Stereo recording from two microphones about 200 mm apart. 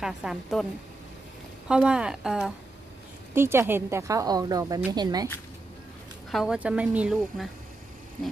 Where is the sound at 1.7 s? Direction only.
5° right (ahead or behind); by 5.3 s 20° right (ahead or behind).